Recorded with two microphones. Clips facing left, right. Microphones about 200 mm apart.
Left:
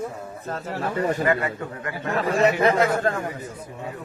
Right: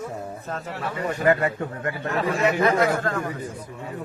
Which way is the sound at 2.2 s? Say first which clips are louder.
Left 3 dB; 35° left (ahead or behind).